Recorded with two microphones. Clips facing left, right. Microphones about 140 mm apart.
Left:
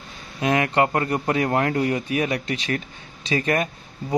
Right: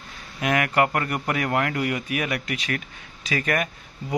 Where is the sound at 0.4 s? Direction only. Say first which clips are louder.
Left 2 dB; 25° left (ahead or behind).